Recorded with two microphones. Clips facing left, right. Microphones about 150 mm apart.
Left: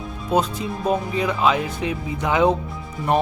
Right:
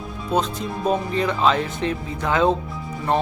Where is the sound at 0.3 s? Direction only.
5° left (ahead or behind).